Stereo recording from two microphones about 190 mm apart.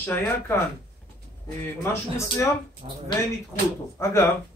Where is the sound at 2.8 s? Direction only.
35° right (ahead or behind).